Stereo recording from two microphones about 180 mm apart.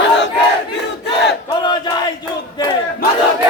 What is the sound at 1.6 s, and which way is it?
Battle cry, 25° left (ahead or behind).